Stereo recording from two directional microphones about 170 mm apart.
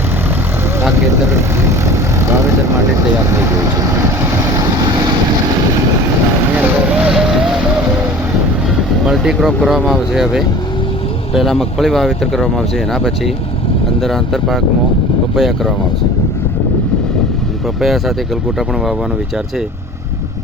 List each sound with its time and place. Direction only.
1.3 s vehicle: 15° right (ahead or behind)
6.6 s vehicle: 5° right (ahead or behind)
9.0 s speech: centre (ahead or behind)
17.7 s speech: centre (ahead or behind)